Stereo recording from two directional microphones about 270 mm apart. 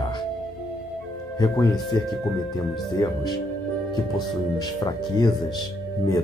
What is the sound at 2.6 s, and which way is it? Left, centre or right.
Speech, centre.